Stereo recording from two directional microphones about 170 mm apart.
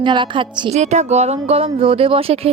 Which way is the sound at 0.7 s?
40° right (ahead or behind).